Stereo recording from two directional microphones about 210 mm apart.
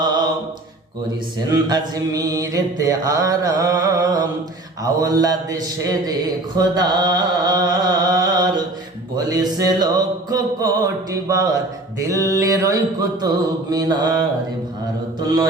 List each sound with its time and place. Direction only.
1.5 s music: 20° right (ahead or behind)
6.6 s a sound: 20° right (ahead or behind)
9.1 s music: 20° right (ahead or behind)